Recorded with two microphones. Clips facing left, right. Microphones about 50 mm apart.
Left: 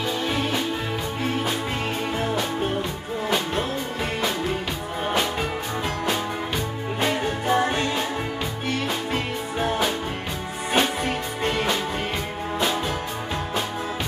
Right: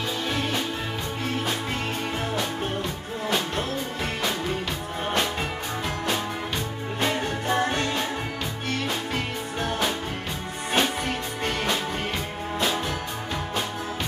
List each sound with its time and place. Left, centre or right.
0.3 s music: centre
3.3 s music: centre
5.0 s music: centre
7.0 s music: centre